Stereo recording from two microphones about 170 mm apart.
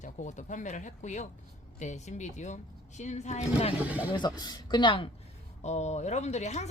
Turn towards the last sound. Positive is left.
turn(degrees=40)  # may be behind; listen again after turning